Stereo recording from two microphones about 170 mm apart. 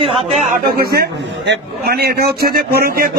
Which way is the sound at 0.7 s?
65° right (ahead or behind).